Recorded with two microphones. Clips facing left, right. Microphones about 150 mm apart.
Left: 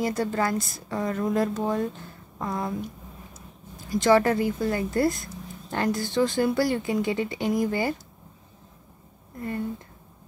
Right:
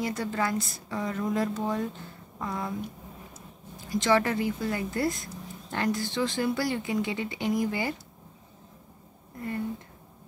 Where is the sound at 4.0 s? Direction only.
45° left (ahead or behind).